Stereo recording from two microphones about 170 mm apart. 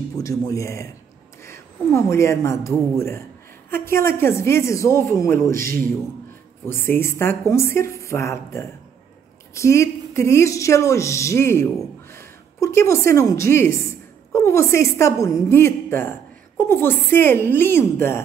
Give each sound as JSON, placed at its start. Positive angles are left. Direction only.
{"t": 0.2, "sound": "a woman's voice", "side_deg": 20}